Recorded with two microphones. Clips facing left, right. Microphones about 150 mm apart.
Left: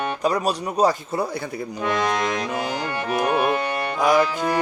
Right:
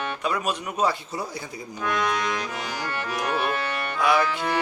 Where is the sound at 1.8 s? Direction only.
30° left (ahead or behind).